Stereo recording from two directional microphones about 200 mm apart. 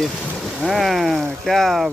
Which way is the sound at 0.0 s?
Centre (ahead or behind).